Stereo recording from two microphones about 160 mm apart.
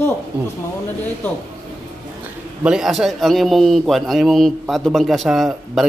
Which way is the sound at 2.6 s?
5° right (ahead or behind).